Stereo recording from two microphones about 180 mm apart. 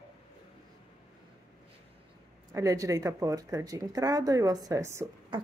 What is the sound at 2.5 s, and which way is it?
Speech, 20° right (ahead or behind).